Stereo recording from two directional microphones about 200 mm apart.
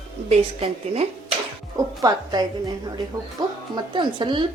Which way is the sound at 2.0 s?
20° right (ahead or behind).